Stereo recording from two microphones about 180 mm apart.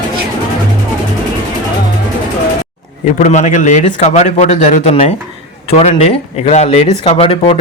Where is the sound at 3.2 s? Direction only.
40° left (ahead or behind).